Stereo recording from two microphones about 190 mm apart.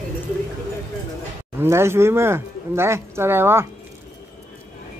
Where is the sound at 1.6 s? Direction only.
15° right (ahead or behind).